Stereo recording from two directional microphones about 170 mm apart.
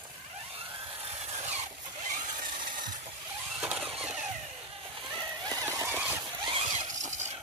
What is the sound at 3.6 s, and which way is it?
Vehicle, 5° right (ahead or behind).